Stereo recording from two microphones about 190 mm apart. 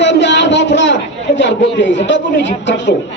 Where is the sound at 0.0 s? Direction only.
70° left (ahead or behind).